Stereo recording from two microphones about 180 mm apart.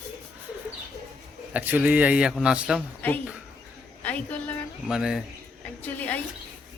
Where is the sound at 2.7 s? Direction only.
10° left (ahead or behind).